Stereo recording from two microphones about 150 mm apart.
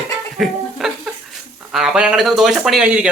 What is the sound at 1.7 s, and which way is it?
Speech, 5° right (ahead or behind).